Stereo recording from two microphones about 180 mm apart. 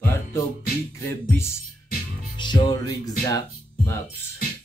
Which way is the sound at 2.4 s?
25° left (ahead or behind).